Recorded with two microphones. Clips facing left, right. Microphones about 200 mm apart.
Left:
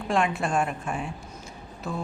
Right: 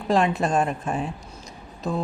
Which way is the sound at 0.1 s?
35° right (ahead or behind).